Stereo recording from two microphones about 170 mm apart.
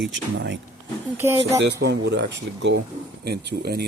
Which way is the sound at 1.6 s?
85° right.